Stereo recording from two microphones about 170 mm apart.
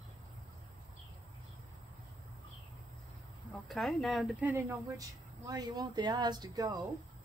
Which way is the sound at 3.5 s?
Centre (ahead or behind).